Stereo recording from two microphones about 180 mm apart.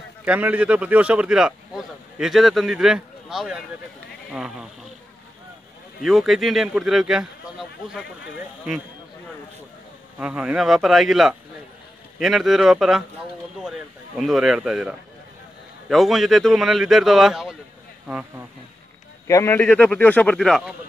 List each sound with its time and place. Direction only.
0.2 s speech: 10° right (ahead or behind)
6.0 s speech: centre (ahead or behind)
10.1 s speech: 5° right (ahead or behind)
19.2 s a man's voice: 15° left (ahead or behind)